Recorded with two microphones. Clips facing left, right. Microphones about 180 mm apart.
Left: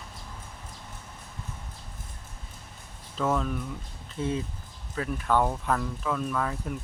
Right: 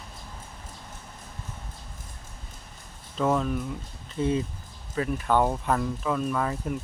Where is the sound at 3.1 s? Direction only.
5° right (ahead or behind).